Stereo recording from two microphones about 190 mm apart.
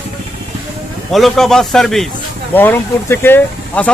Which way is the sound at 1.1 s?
Centre (ahead or behind).